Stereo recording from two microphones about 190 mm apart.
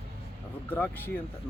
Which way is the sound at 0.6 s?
10° left (ahead or behind).